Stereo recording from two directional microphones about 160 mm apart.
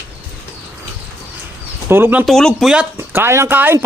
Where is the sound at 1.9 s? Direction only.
10° right (ahead or behind).